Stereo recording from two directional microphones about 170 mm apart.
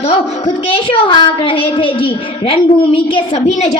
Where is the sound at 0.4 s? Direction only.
30° left (ahead or behind).